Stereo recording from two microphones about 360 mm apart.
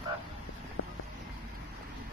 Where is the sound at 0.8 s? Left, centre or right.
Left.